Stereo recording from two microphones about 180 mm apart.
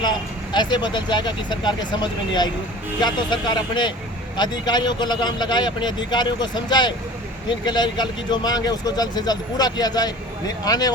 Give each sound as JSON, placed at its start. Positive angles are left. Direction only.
{"t": 0.0, "sound": "speech", "side_deg": 25}